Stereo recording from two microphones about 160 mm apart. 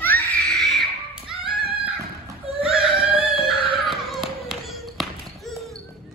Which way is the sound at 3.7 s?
Centre (ahead or behind).